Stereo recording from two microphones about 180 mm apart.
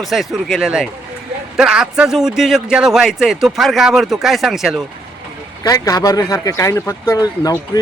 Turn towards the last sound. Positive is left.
turn(degrees=20)  # may be behind; listen again after turning